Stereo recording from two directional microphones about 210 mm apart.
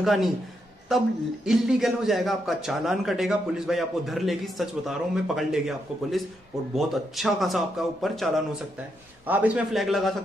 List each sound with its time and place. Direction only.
0.0 s a man's voice: centre (ahead or behind)
9.3 s a man's voice: 5° right (ahead or behind)